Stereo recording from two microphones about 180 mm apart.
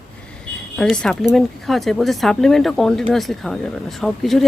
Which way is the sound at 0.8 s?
5° left (ahead or behind).